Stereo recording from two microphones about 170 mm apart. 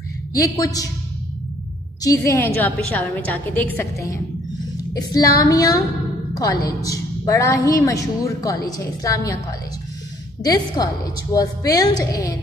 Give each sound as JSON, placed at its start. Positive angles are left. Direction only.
{"t": 0.3, "sound": "a woman's voice", "side_deg": 20}
{"t": 2.0, "sound": "a woman's voice", "side_deg": 15}